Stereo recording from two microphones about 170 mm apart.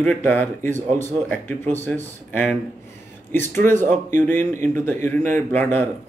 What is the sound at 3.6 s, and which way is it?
Speech, 10° left (ahead or behind).